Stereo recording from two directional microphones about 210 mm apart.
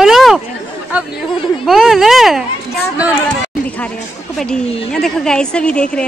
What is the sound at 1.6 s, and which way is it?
Speech, centre (ahead or behind).